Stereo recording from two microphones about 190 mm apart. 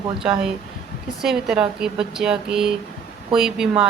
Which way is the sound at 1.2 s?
5° right (ahead or behind).